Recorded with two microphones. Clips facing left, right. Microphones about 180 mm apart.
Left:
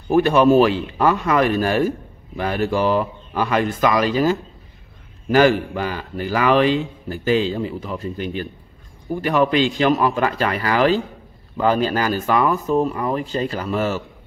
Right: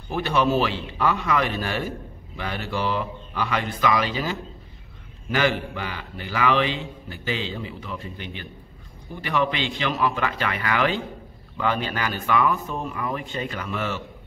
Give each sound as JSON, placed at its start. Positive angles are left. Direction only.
{"t": 0.1, "sound": "a man's voice", "side_deg": 50}